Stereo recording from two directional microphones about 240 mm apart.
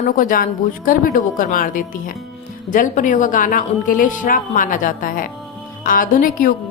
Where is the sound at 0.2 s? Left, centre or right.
Left.